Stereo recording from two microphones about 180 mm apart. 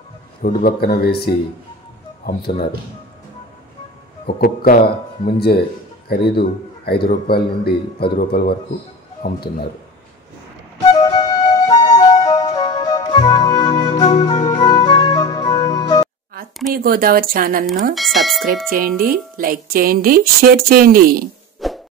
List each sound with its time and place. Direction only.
0.4 s a man's voice: 55° left (ahead or behind)
4.4 s a man's voice: 55° left (ahead or behind)
6.0 s a man's voice: 60° left (ahead or behind)
10.9 s flute: 25° left (ahead or behind)
16.7 s speech: 55° right (ahead or behind)
17.9 s speech: centre (ahead or behind)
18.7 s speech: 50° right (ahead or behind)
21.6 s plop: centre (ahead or behind)